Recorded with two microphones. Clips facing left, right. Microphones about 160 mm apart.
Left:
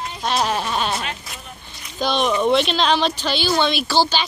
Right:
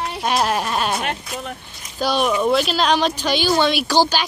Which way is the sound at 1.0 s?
65° right (ahead or behind).